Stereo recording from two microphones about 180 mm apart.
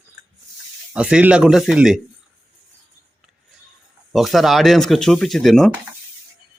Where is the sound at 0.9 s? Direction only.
5° right (ahead or behind).